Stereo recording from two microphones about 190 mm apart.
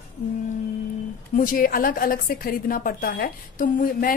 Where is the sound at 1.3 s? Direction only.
45° left (ahead or behind).